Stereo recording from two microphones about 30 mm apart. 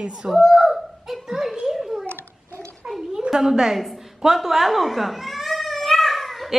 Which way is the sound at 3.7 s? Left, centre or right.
Centre.